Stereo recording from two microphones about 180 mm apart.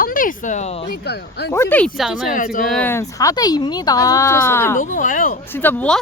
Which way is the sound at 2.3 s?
50° left (ahead or behind).